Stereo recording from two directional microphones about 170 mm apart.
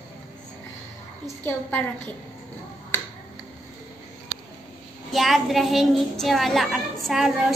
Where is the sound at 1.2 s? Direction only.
15° left (ahead or behind).